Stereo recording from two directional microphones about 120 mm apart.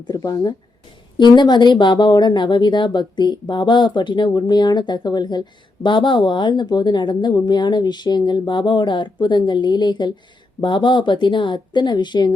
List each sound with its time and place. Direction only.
0.0 s speech: 35° left (ahead or behind)